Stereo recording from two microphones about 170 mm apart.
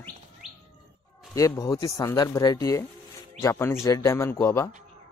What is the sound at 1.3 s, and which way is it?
Speech, 20° left (ahead or behind).